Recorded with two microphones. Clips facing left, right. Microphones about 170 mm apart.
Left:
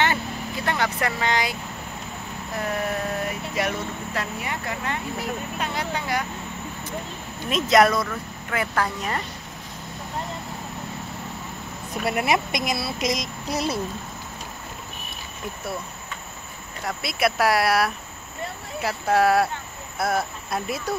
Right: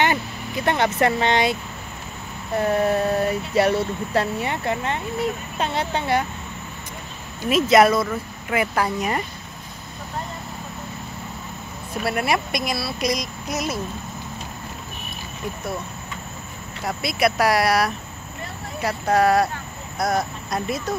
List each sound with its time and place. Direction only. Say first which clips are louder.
0.7 s speech: right 6 dB; 25° right (ahead or behind)
7.4 s speech: right 3 dB; 5° right (ahead or behind)
8.1 s speech: right 4 dB; 15° right (ahead or behind)
12.0 s speech: even; 20° left (ahead or behind)
16.8 s speech: right 3 dB; centre (ahead or behind)